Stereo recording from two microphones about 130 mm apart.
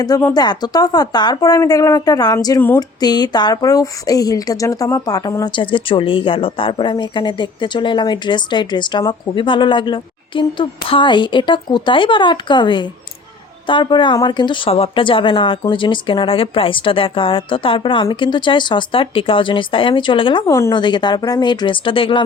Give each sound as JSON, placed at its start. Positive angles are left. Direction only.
{"t": 0.3, "sound": "speech", "side_deg": 35}
{"t": 2.6, "sound": "a sound", "side_deg": 15}
{"t": 3.0, "sound": "speech", "side_deg": 30}